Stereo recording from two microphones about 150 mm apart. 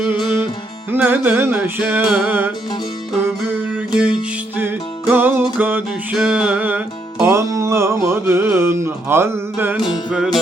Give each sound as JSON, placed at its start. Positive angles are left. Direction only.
{"t": 0.9, "sound": "music", "side_deg": -10}
{"t": 3.9, "sound": "music", "side_deg": -5}